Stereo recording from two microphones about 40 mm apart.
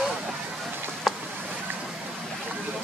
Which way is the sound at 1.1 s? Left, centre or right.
Centre.